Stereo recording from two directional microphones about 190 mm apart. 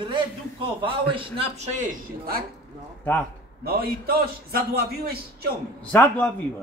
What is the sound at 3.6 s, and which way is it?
A man's voice, 55° right (ahead or behind).